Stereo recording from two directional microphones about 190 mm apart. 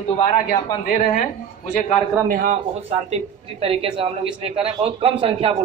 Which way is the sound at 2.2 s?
45° right (ahead or behind).